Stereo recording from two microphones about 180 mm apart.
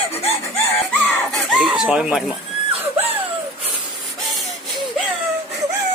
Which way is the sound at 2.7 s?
35° right (ahead or behind).